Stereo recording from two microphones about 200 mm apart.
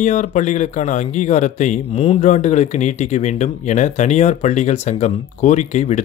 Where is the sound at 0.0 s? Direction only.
40° left (ahead or behind).